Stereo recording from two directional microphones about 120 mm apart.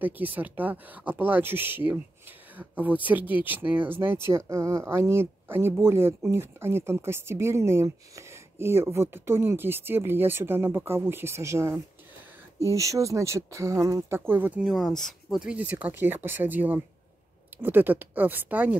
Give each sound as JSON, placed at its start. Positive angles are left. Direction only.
{"t": 0.0, "sound": "speech", "side_deg": -15}
{"t": 12.7, "sound": "speech", "side_deg": -25}
{"t": 14.6, "sound": "speech", "side_deg": 0}
{"t": 15.7, "sound": "speech", "side_deg": -15}